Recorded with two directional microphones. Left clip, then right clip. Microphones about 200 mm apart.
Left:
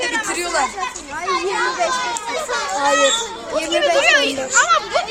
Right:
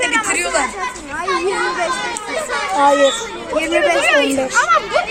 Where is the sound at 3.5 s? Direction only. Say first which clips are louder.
Right 2 dB; 20° left (ahead or behind).